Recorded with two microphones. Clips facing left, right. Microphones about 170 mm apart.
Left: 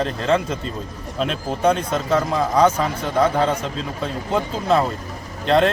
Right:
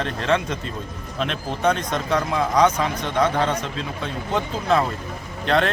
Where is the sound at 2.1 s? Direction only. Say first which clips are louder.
Left 2 dB; 30° left (ahead or behind).